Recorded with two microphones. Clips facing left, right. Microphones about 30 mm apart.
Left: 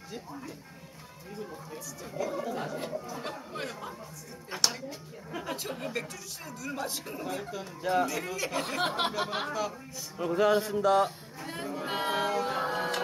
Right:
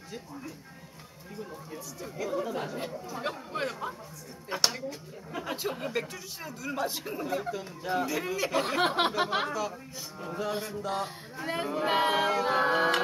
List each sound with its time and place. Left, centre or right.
2.2 s speech: centre
10.3 s speech: left
11.3 s speech: right
12.6 s music: right